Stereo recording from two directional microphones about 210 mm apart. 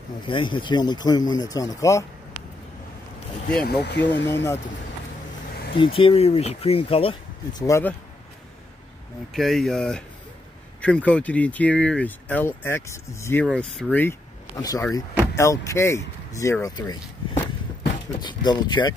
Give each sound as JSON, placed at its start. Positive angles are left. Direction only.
{"t": 0.3, "sound": "speech", "side_deg": 20}
{"t": 3.8, "sound": "speech", "side_deg": 55}
{"t": 4.3, "sound": "speech", "side_deg": 10}
{"t": 5.8, "sound": "speech", "side_deg": 25}
{"t": 9.3, "sound": "speech", "side_deg": 0}
{"t": 14.6, "sound": "speech", "side_deg": 15}